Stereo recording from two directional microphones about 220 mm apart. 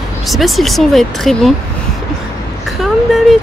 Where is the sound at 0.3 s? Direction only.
Centre (ahead or behind).